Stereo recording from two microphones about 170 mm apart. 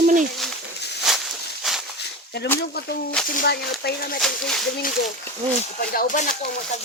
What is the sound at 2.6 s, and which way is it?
Speech, 70° left (ahead or behind).